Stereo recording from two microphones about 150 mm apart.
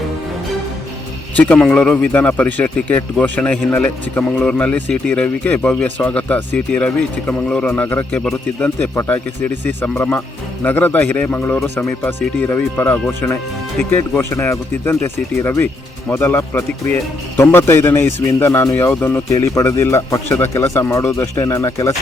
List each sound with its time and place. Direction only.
1.4 s speech: 5° left (ahead or behind)